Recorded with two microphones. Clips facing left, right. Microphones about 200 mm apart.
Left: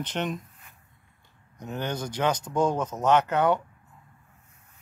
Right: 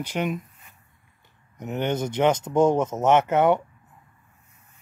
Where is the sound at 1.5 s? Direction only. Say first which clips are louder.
Right 6 dB; 20° right (ahead or behind).